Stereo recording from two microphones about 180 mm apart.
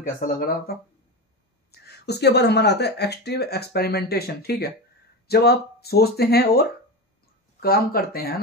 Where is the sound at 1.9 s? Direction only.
65° left (ahead or behind).